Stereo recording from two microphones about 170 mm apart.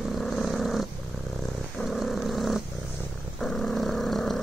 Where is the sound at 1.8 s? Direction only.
Centre (ahead or behind).